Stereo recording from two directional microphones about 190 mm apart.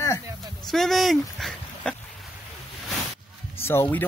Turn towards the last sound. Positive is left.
turn(degrees=10)  # may be behind; listen again after turning